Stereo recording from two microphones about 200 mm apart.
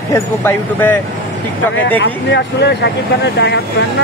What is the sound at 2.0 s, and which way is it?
Speech, 60° left (ahead or behind).